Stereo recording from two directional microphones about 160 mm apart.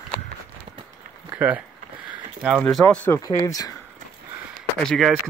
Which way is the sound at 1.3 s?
10° right (ahead or behind).